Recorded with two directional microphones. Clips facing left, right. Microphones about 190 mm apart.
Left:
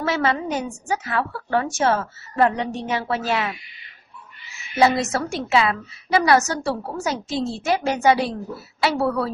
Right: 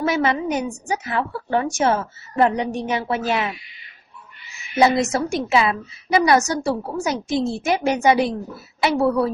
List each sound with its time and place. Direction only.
0.0 s a woman's voice: 15° right (ahead or behind)
4.8 s a woman's voice: 15° right (ahead or behind)